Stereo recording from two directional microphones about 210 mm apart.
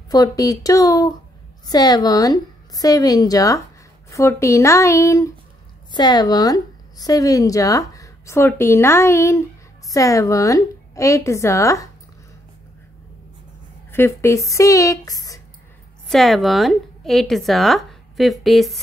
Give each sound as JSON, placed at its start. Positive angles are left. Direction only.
{"t": 0.1, "sound": "a woman's voice", "side_deg": 15}
{"t": 13.9, "sound": "a woman's voice", "side_deg": 10}
{"t": 16.1, "sound": "a woman's voice", "side_deg": 0}